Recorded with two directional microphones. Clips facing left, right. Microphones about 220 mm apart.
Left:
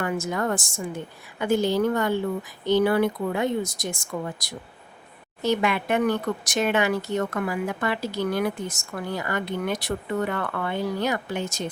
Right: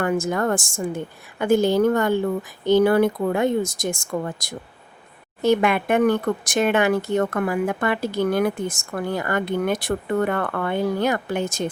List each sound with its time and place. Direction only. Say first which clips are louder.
0.0 s speech: right 5 dB; 50° right (ahead or behind)